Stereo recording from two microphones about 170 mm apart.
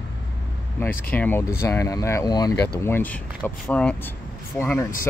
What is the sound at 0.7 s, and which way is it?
Speech, 10° left (ahead or behind).